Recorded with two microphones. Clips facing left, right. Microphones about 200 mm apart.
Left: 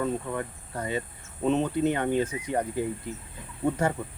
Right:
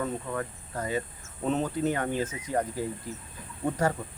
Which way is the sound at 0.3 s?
25° left (ahead or behind).